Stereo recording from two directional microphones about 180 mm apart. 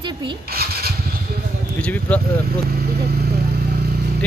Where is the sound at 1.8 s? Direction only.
10° left (ahead or behind).